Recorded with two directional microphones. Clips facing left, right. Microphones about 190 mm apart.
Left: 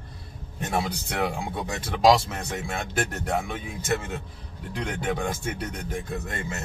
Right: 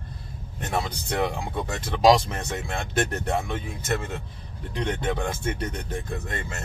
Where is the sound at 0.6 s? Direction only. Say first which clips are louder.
Left 1 dB; 10° left (ahead or behind).